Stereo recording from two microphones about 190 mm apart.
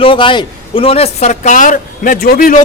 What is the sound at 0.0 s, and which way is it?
A man's voice, 25° left (ahead or behind).